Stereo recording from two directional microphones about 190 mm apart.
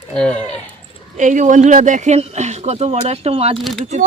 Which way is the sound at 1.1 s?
40° right (ahead or behind).